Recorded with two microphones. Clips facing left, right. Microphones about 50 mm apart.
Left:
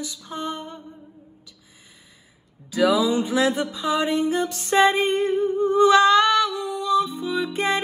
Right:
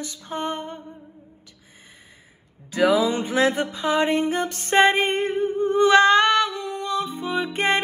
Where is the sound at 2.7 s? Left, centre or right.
Right.